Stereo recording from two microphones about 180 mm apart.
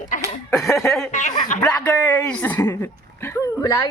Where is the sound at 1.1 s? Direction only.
45° left (ahead or behind).